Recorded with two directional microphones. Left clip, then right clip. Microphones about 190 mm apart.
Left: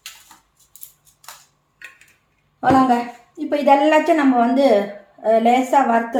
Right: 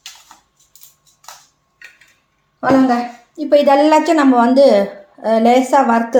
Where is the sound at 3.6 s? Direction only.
50° right (ahead or behind).